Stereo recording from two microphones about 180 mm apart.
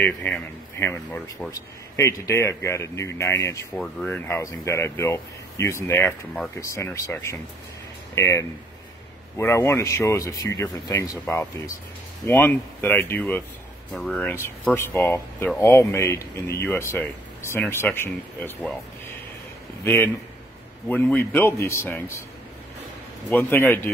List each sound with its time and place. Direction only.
0.0 s speech: 10° left (ahead or behind)
3.7 s speech: 5° left (ahead or behind)
19.8 s a man's voice: 15° left (ahead or behind)
23.3 s speech: 10° left (ahead or behind)